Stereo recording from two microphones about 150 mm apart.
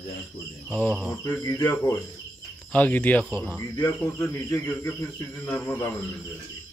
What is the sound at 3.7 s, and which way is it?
Speech, 25° left (ahead or behind).